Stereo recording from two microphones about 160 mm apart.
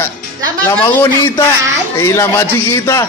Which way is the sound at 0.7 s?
15° left (ahead or behind).